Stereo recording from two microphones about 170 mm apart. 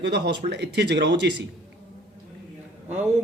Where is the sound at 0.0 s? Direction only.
85° right.